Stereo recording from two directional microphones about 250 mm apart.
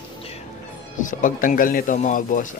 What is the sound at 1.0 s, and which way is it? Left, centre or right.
Speech, left.